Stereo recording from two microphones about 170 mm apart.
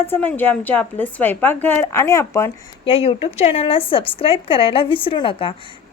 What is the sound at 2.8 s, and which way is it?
Speech, 35° left (ahead or behind).